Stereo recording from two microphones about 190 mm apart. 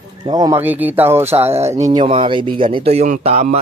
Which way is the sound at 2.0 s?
25° right (ahead or behind).